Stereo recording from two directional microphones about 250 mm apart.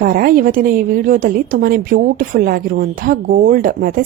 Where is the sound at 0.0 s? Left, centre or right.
Right.